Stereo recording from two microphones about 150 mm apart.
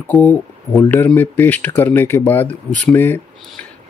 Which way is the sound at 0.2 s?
15° left (ahead or behind).